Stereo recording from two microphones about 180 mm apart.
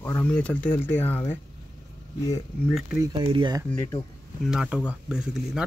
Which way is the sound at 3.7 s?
15° left (ahead or behind).